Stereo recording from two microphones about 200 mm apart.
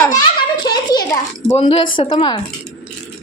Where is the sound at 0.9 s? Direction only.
20° left (ahead or behind).